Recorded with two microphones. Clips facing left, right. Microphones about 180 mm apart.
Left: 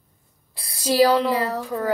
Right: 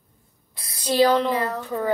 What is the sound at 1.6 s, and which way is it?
Speech, 5° left (ahead or behind).